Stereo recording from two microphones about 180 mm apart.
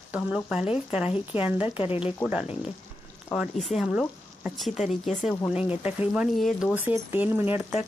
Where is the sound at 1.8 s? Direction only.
30° left (ahead or behind).